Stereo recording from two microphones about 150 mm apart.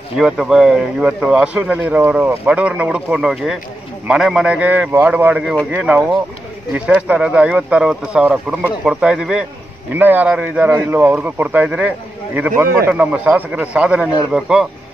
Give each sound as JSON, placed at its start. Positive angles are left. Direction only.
{"t": 0.2, "sound": "a man's voice", "side_deg": -5}